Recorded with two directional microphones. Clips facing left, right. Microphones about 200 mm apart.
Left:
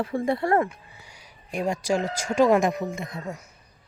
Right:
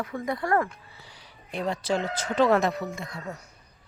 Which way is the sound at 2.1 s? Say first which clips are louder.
Left 2 dB; 10° left (ahead or behind).